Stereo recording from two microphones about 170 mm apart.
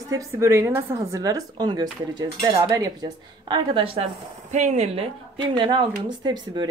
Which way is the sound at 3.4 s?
30° right (ahead or behind).